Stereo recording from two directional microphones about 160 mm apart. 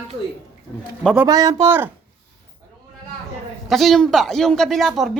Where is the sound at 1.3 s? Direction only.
20° right (ahead or behind).